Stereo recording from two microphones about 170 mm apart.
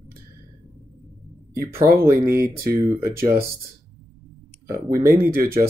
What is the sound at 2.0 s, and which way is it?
Speech, 15° right (ahead or behind).